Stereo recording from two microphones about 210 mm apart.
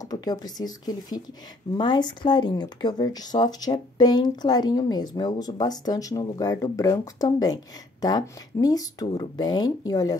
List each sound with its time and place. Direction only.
0.0 s speech: 20° left (ahead or behind)